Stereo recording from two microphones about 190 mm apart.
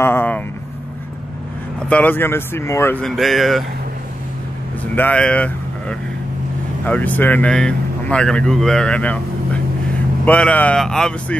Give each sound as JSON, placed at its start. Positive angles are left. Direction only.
{"t": 0.0, "sound": "a sound", "side_deg": 10}
{"t": 1.9, "sound": "speech", "side_deg": 10}
{"t": 4.9, "sound": "speech", "side_deg": 10}